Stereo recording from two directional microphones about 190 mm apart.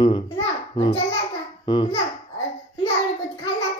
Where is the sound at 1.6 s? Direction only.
25° left (ahead or behind).